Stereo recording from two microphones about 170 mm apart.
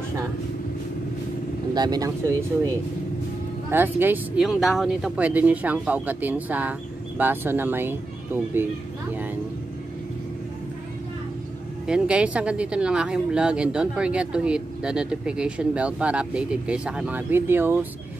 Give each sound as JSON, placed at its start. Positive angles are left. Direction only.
{"t": 1.7, "sound": "speech", "side_deg": -25}
{"t": 3.7, "sound": "speech", "side_deg": -10}
{"t": 11.8, "sound": "speech", "side_deg": -5}